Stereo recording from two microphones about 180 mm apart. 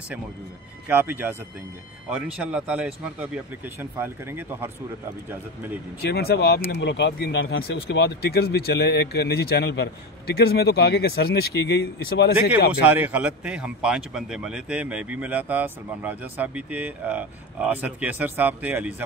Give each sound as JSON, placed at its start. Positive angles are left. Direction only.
{"t": 0.8, "sound": "speech", "side_deg": -10}
{"t": 6.0, "sound": "speech", "side_deg": 70}
{"t": 12.8, "sound": "speech", "side_deg": -10}